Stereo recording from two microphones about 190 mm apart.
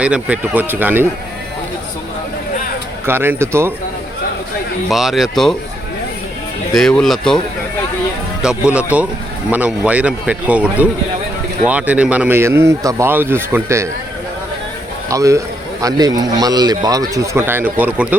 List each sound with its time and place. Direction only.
0.0 s a man's voice: 5° right (ahead or behind)
3.1 s a man's voice: 10° right (ahead or behind)
4.9 s speech: centre (ahead or behind)
6.7 s speech: 5° left (ahead or behind)
8.4 s a man's voice: 5° right (ahead or behind)
15.1 s a man's voice: 15° right (ahead or behind)